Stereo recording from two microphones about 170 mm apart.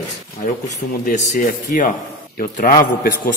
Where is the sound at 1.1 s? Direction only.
50° left (ahead or behind).